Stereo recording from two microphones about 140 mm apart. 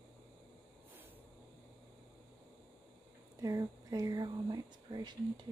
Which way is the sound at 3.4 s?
25° right (ahead or behind).